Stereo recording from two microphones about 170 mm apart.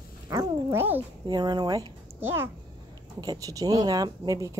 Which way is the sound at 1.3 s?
25° right (ahead or behind).